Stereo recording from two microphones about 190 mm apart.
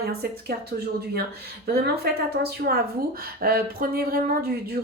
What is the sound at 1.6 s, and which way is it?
A woman's voice, 55° right (ahead or behind).